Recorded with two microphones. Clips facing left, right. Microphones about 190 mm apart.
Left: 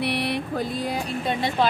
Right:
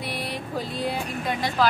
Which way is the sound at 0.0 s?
70° left (ahead or behind).